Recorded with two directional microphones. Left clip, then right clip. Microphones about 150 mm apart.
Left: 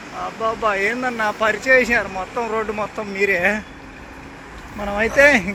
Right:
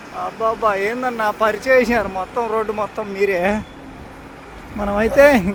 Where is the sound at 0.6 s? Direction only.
35° right (ahead or behind).